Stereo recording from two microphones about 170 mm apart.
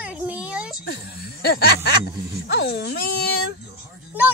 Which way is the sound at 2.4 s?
75° left (ahead or behind).